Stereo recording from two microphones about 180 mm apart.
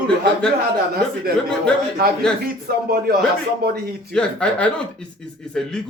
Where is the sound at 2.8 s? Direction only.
60° right (ahead or behind).